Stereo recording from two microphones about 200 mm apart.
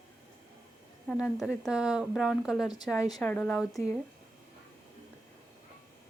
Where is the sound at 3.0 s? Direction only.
20° left (ahead or behind).